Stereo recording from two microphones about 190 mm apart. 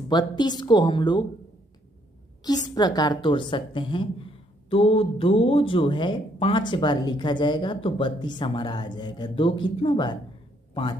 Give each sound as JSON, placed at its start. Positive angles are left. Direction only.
{"t": 0.1, "sound": "speech", "side_deg": 20}
{"t": 2.4, "sound": "speech", "side_deg": 20}